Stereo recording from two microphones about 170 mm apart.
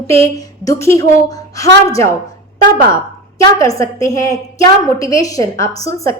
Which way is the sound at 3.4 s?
20° left (ahead or behind).